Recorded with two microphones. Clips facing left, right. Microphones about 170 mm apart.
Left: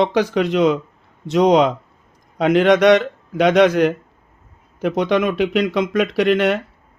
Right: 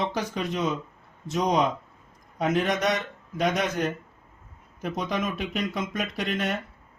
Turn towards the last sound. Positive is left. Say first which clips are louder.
# left 12 dB
turn(degrees=75)  # may be behind; listen again after turning